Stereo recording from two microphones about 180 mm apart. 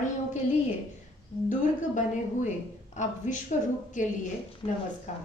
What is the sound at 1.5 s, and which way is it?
A woman's voice, 45° left (ahead or behind).